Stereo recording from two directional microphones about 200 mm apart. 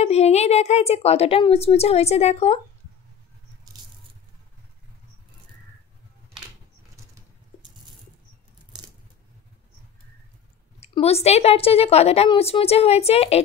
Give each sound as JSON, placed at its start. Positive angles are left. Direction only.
{"t": 0.0, "sound": "a woman's voice", "side_deg": 35}
{"t": 10.8, "sound": "a woman's voice", "side_deg": 30}